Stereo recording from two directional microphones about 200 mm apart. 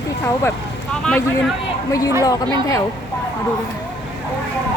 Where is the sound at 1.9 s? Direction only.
15° left (ahead or behind).